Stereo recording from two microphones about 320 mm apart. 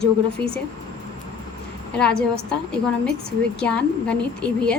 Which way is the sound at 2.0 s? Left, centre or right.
Centre.